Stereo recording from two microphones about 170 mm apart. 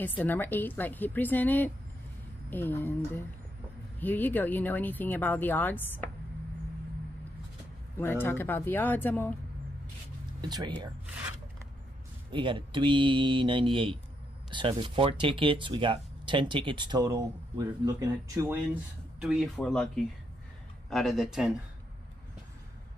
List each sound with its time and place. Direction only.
0.2 s speech: 10° left (ahead or behind)
4.0 s speech: 10° left (ahead or behind)
8.0 s speech: 15° left (ahead or behind)
10.4 s speech: 25° right (ahead or behind)
12.3 s speech: 30° right (ahead or behind)
19.1 s speech: centre (ahead or behind)